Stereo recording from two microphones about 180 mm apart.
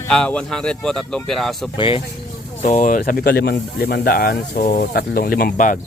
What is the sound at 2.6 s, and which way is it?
Speech, 45° left (ahead or behind).